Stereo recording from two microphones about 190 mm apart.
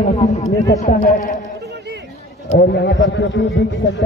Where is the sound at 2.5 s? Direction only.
65° left (ahead or behind).